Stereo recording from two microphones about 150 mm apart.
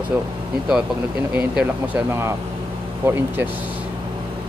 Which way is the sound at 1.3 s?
10° right (ahead or behind).